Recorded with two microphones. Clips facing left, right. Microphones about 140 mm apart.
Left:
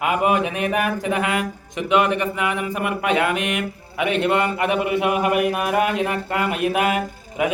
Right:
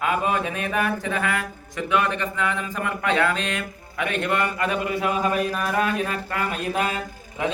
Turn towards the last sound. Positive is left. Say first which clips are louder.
# left 4 dB
turn(degrees=15)  # may be behind; listen again after turning